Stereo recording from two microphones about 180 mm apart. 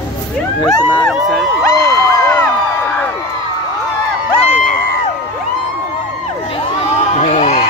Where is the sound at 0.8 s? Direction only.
10° left (ahead or behind).